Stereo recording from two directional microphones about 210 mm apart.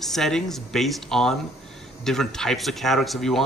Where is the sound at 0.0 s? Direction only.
Centre (ahead or behind).